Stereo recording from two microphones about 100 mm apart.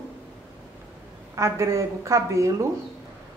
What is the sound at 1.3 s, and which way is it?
Speech, 30° right (ahead or behind).